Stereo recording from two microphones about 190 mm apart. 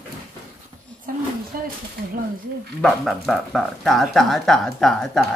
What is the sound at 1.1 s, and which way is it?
Speech, 45° right (ahead or behind).